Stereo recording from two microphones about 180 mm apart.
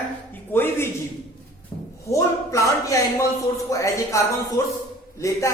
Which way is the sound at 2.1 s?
15° left (ahead or behind).